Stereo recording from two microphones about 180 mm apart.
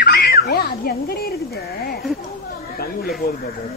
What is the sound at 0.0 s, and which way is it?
A child's voice, 65° left (ahead or behind).